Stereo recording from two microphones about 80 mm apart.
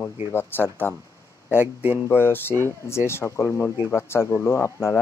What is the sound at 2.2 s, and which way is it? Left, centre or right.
Speech, left.